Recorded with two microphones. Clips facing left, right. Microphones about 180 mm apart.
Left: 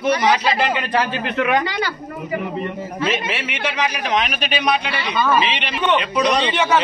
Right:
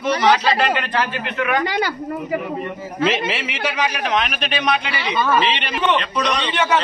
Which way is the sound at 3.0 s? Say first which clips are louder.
Right 3 dB; 85° right.